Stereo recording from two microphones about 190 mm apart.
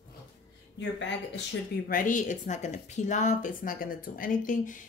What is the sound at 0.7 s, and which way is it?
Speech, 65° left (ahead or behind).